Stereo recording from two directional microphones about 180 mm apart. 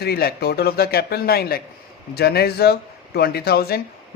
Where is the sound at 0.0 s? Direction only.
60° left (ahead or behind).